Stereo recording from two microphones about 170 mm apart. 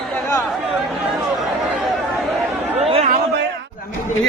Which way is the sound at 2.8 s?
40° right (ahead or behind).